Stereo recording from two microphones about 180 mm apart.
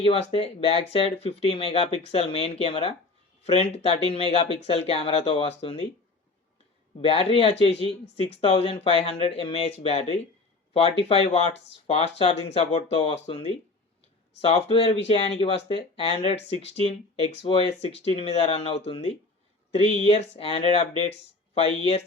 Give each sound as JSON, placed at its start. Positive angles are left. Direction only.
{"t": 0.0, "sound": "speech", "side_deg": 35}
{"t": 7.0, "sound": "speech", "side_deg": 30}
{"t": 14.4, "sound": "speech", "side_deg": 30}